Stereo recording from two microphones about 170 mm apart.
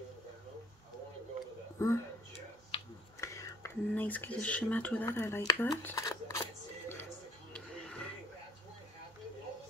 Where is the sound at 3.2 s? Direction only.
15° left (ahead or behind).